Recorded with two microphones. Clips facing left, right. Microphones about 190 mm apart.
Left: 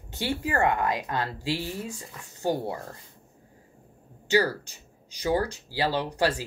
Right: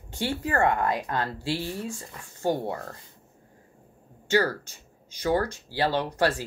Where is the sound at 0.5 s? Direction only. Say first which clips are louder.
Right 1 dB; 15° left (ahead or behind).